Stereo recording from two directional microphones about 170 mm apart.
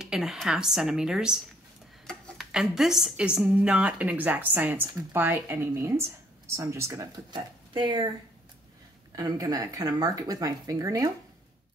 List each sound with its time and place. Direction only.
0.0 s a woman's voice: 5° right (ahead or behind); by 8.1 s 25° right (ahead or behind)
9.1 s speech: 20° right (ahead or behind)